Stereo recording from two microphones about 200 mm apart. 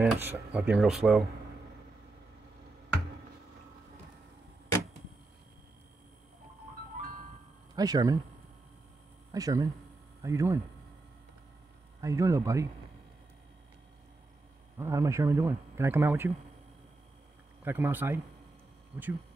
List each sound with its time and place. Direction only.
0.0 s speech: 5° right (ahead or behind)
7.7 s speech: 20° right (ahead or behind)
9.3 s speech: 15° right (ahead or behind)
12.0 s speech: 15° right (ahead or behind)
14.8 s speech: 15° right (ahead or behind)
17.6 s speech: 10° right (ahead or behind)